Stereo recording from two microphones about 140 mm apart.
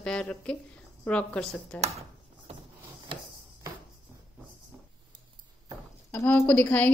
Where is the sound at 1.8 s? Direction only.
50° right (ahead or behind).